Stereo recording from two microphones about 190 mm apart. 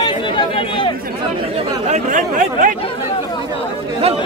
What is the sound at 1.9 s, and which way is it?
Speech, 45° right (ahead or behind).